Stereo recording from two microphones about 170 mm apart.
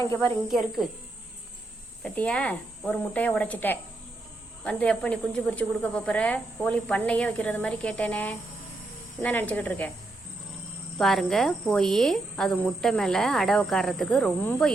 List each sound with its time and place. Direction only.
0.0 s speech: 15° left (ahead or behind)
0.4 s speech: centre (ahead or behind)
2.0 s speech: 5° left (ahead or behind)
10.9 s speech: centre (ahead or behind)